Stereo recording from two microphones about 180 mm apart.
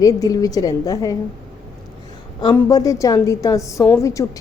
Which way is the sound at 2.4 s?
25° left (ahead or behind).